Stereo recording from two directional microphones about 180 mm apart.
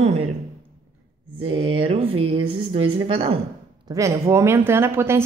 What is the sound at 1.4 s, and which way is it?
A woman's voice, 30° right (ahead or behind).